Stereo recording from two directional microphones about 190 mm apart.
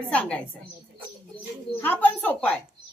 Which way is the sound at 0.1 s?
5° left (ahead or behind).